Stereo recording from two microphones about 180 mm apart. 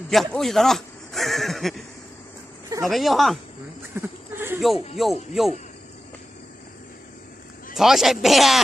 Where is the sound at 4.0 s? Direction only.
15° right (ahead or behind).